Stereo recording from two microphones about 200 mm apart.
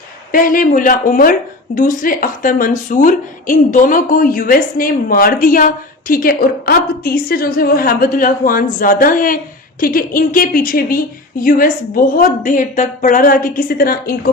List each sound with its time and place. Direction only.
0.3 s speech: 45° left (ahead or behind)